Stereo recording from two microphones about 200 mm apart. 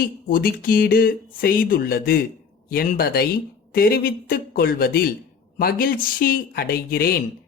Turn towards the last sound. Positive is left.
turn(degrees=50)  # may be behind; listen again after turning